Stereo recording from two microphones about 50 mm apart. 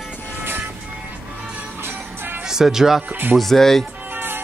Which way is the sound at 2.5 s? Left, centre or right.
Centre.